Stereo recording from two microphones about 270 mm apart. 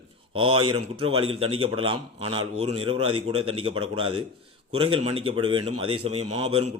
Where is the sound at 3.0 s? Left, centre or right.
Right.